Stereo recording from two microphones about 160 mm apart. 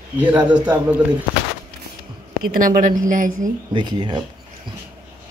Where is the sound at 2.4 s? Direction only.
60° right (ahead or behind).